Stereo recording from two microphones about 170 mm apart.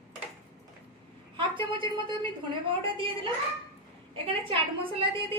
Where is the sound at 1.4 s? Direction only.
30° right (ahead or behind).